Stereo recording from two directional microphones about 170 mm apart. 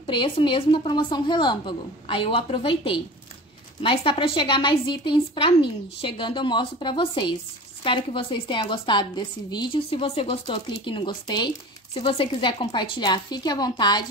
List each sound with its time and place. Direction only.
0.0 s a woman's voice: 30° left (ahead or behind)